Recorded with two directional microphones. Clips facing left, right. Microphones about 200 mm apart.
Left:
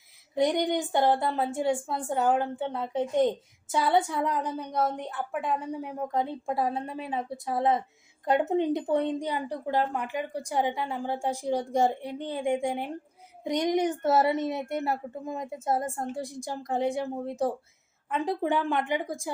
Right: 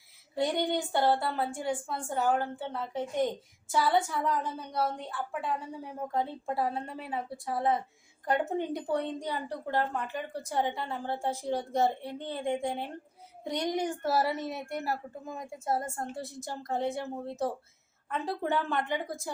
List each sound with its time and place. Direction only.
0.3 s a woman's voice: 15° left (ahead or behind)